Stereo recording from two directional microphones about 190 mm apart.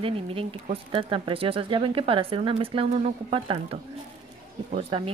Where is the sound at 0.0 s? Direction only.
30° right (ahead or behind).